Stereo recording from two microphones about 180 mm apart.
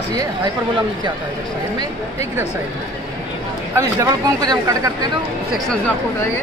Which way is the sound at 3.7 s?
20° right (ahead or behind).